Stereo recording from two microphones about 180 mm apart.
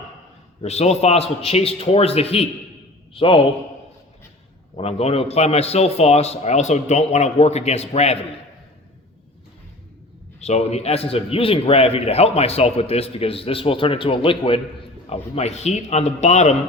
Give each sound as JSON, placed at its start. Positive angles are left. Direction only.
{"t": 0.6, "sound": "a man's voice", "side_deg": 35}
{"t": 4.8, "sound": "a man's voice", "side_deg": 35}
{"t": 10.4, "sound": "a man's voice", "side_deg": 35}